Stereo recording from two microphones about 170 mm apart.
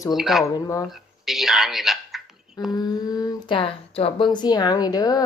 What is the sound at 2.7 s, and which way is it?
Speech, 25° left (ahead or behind).